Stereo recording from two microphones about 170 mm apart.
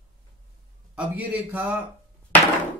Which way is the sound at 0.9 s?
10° right (ahead or behind).